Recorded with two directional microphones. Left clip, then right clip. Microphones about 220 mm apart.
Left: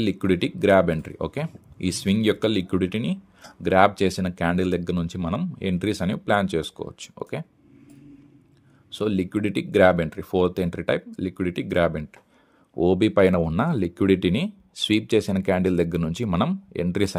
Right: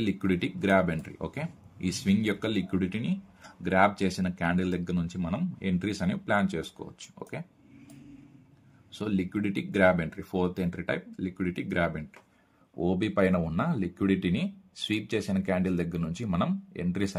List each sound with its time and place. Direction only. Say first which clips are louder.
0.0 s speech: left 6 dB; 40° left (ahead or behind)
8.9 s speech: left 7 dB; 40° left (ahead or behind)